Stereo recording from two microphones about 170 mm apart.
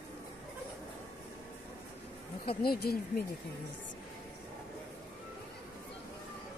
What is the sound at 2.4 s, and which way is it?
Speech, 65° left (ahead or behind).